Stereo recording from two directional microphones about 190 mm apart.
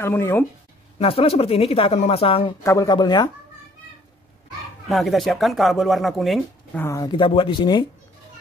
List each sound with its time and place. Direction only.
0.0 s speech: 10° left (ahead or behind)
0.9 s speech: 30° left (ahead or behind)
2.6 s speech: 15° left (ahead or behind)
4.8 s speech: centre (ahead or behind)
6.8 s speech: 20° left (ahead or behind)